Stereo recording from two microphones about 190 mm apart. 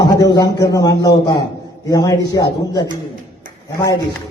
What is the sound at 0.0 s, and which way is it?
A man's voice, 20° left (ahead or behind).